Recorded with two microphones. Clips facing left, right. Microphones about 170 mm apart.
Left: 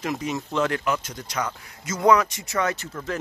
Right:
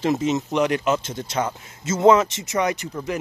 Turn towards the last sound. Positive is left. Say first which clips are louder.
# right 3 dB
turn(degrees=-15)  # may be behind; listen again after turning